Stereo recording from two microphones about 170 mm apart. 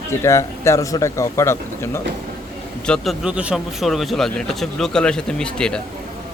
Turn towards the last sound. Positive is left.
turn(degrees=5)  # may be behind; listen again after turning